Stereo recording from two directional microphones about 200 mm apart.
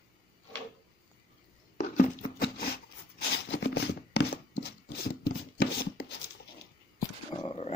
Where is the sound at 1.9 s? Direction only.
50° left (ahead or behind).